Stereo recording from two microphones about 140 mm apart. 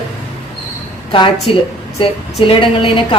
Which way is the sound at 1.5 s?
40° left (ahead or behind).